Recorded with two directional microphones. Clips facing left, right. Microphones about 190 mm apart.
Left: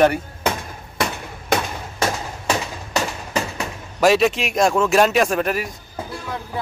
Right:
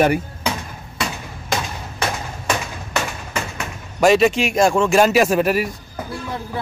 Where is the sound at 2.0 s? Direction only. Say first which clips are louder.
Left 2 dB; 35° left (ahead or behind).